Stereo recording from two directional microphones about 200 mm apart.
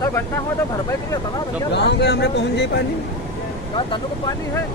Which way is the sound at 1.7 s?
60° left (ahead or behind).